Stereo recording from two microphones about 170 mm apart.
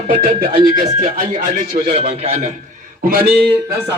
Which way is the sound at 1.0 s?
60° right (ahead or behind).